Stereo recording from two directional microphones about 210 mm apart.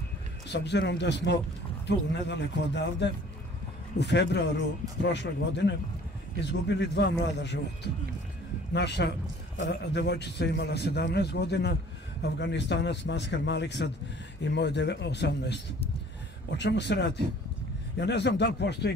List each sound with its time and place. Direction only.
0.5 s a man's voice: 55° left (ahead or behind)